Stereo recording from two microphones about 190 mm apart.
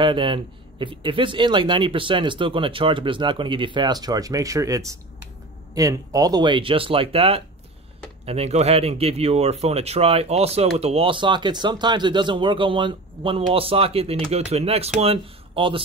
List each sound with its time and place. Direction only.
0.0 s speech: 25° right (ahead or behind)